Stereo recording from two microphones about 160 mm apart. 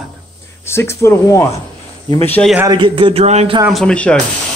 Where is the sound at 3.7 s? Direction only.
5° left (ahead or behind).